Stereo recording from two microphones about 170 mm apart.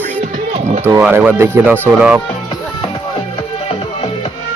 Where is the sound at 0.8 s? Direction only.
15° right (ahead or behind).